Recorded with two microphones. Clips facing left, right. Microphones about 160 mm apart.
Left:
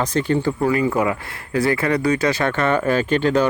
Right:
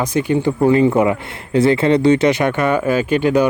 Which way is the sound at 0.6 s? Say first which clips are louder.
Right 6 dB; 25° right (ahead or behind).